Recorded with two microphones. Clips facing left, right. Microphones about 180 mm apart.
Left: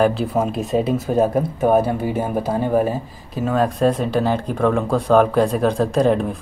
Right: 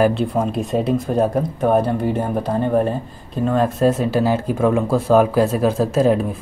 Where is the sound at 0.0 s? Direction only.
Centre (ahead or behind).